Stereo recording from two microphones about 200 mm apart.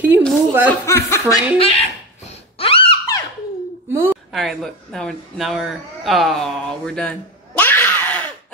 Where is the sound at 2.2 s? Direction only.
30° left (ahead or behind).